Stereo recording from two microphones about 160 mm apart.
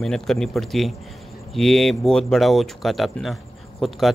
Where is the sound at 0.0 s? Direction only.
5° left (ahead or behind).